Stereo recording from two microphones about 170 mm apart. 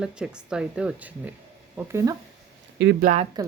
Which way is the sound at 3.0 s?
45° right (ahead or behind).